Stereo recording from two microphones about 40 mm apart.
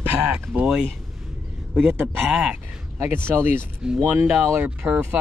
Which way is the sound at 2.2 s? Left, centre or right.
Centre.